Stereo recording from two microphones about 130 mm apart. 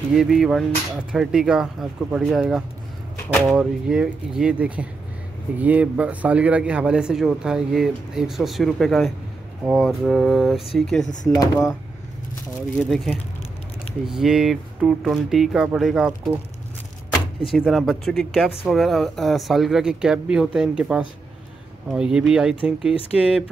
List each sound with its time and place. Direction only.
0.1 s speech: 5° right (ahead or behind)
11.3 s speech: 25° left (ahead or behind)
12.8 s speech: 5° right (ahead or behind)
17.5 s speech: centre (ahead or behind)